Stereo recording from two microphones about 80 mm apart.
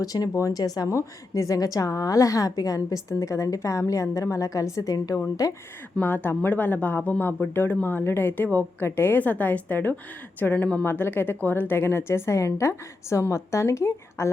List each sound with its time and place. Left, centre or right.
0.0 s a woman's voice: left
6.0 s a woman's voice: left